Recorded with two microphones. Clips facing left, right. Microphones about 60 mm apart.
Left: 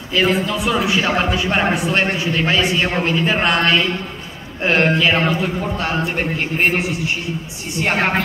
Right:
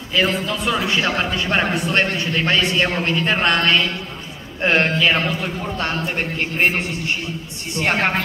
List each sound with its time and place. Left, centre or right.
0.2 s a man's voice: centre